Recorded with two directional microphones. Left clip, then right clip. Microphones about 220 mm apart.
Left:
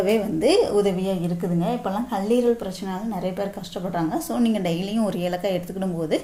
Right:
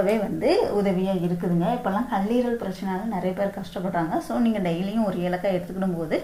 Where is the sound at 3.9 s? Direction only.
40° left (ahead or behind).